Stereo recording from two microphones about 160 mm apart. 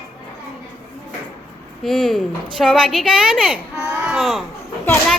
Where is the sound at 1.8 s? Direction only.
Centre (ahead or behind).